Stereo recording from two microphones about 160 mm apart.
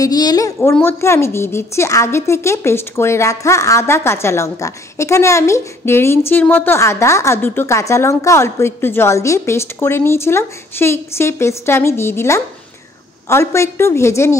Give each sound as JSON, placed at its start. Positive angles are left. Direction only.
{"t": 0.0, "sound": "a woman's voice", "side_deg": 25}